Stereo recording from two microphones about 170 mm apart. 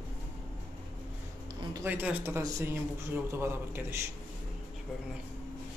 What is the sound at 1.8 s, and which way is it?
Speech, 10° right (ahead or behind).